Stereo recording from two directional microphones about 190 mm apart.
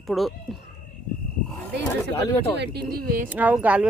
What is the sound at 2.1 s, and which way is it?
Speech, 15° left (ahead or behind).